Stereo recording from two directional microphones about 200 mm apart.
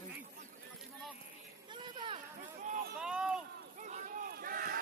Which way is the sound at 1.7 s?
25° right (ahead or behind).